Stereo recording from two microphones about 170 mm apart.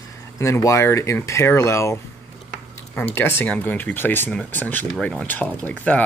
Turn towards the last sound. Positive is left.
turn(degrees=10)  # may be behind; listen again after turning